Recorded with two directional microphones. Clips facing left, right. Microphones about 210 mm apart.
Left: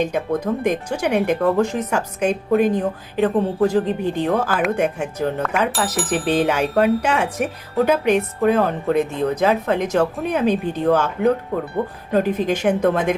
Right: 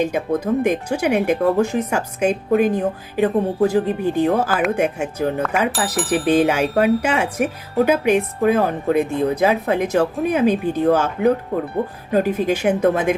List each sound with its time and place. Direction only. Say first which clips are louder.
0.0 s speech: right 1 dB; 10° right (ahead or behind)